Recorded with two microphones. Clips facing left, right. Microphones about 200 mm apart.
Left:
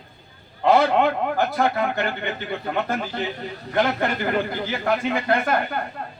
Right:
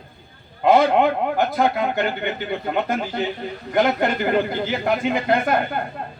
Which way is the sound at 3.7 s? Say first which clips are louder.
Right 3 dB; 20° right (ahead or behind).